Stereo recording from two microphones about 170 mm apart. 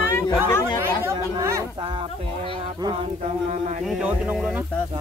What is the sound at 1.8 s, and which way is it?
Speech, 30° right (ahead or behind).